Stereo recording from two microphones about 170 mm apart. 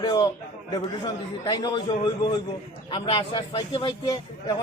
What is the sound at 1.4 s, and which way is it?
A man's voice, 25° left (ahead or behind).